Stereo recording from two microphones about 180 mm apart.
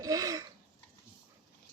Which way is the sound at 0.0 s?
20° right (ahead or behind).